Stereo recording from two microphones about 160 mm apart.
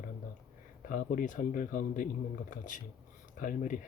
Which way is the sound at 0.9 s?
55° left (ahead or behind).